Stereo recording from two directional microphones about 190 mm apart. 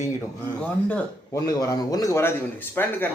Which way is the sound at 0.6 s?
10° left (ahead or behind).